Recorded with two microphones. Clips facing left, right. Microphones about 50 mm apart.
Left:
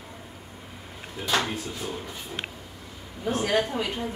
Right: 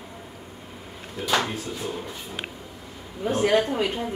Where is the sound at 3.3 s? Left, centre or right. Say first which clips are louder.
Right 4 dB; right.